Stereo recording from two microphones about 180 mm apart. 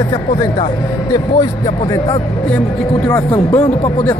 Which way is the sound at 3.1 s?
20° left (ahead or behind).